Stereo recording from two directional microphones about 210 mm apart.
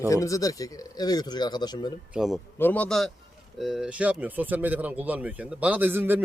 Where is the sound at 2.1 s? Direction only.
Centre (ahead or behind).